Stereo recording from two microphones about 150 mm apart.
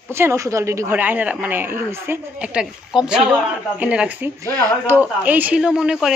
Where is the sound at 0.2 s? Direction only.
20° right (ahead or behind).